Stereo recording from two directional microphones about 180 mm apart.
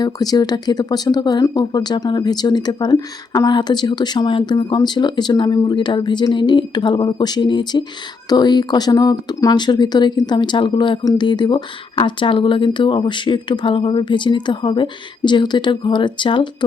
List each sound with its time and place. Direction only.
0.0 s speech: 20° left (ahead or behind)